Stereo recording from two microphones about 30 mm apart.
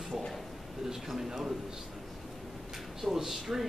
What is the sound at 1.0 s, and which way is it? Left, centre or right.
Speech, centre.